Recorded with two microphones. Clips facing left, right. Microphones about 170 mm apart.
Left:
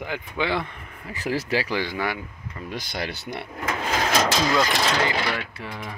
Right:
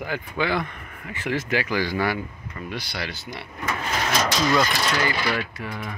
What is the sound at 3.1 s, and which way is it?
Speech, 60° left (ahead or behind).